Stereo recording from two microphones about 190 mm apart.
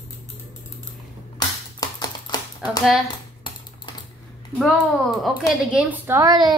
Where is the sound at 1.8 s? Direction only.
20° left (ahead or behind).